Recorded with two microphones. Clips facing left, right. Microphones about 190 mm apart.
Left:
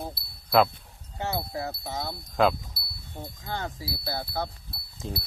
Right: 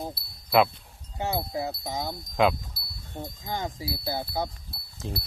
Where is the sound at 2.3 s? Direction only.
Centre (ahead or behind).